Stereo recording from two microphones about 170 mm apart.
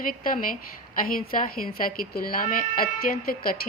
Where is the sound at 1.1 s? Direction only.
60° left (ahead or behind).